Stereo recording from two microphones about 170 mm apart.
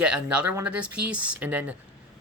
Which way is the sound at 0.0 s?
5° right (ahead or behind).